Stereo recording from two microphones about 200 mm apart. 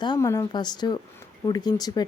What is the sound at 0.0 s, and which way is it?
Speech, 15° left (ahead or behind).